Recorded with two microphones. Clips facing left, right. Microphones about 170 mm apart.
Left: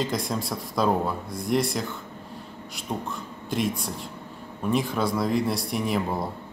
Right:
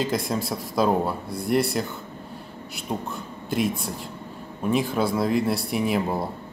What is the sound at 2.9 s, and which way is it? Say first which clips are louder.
Speech: right 2 dB; 15° right (ahead or behind).